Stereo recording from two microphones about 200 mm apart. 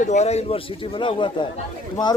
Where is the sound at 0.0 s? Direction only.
35° left (ahead or behind).